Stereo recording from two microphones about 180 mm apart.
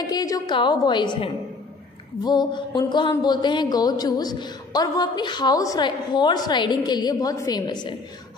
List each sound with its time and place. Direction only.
0.0 s speech: 20° left (ahead or behind)